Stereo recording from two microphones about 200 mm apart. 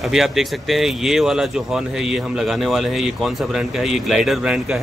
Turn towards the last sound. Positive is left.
turn(degrees=0)  # may be behind; listen again after turning